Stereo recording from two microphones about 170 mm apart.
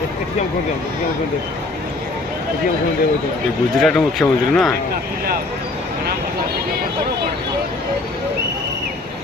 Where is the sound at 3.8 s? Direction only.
5° left (ahead or behind).